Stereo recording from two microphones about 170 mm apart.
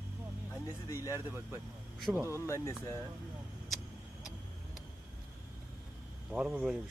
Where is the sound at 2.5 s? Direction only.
15° left (ahead or behind).